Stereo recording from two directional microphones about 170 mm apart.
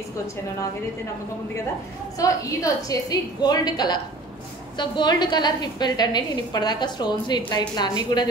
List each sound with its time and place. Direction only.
2.1 s a woman's voice: 20° left (ahead or behind)